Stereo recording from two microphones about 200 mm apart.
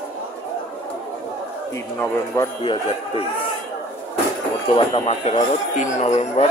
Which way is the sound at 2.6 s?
25° left (ahead or behind).